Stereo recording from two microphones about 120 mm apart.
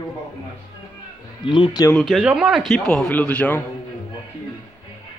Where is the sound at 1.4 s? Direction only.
45° left (ahead or behind).